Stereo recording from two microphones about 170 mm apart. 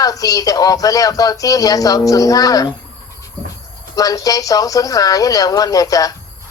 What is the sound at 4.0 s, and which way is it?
Speech, 20° left (ahead or behind).